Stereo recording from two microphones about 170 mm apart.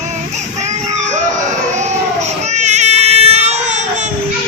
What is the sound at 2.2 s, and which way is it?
Baby cry, 45° right (ahead or behind).